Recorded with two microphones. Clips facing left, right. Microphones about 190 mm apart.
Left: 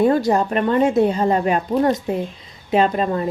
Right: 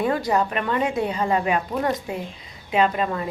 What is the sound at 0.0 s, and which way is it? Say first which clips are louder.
A woman's voice: left 5 dB; 40° left (ahead or behind).